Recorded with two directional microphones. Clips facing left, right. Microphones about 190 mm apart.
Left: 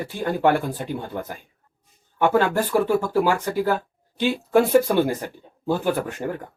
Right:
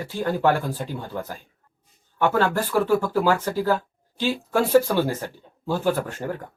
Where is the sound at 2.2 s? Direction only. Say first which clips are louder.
Left 2 dB; 15° left (ahead or behind).